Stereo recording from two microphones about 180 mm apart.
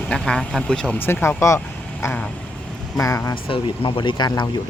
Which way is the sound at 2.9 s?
20° left (ahead or behind).